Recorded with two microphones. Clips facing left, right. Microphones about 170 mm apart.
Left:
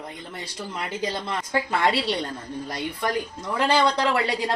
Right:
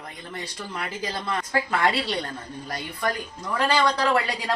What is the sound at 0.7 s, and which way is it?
Speech, 20° left (ahead or behind).